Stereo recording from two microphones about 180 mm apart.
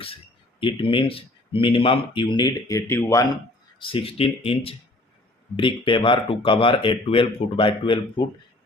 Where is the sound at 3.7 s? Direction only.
30° left (ahead or behind).